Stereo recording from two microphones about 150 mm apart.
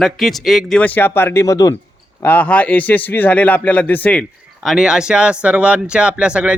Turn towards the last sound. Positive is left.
turn(degrees=-5)  # may be behind; listen again after turning